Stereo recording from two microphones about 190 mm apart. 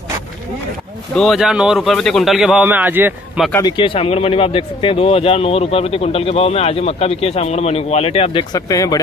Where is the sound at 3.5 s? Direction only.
25° left (ahead or behind).